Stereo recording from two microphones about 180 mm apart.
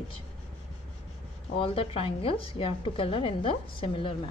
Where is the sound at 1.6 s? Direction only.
30° left (ahead or behind).